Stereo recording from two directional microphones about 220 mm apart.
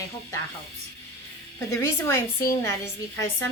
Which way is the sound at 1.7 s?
10° left (ahead or behind).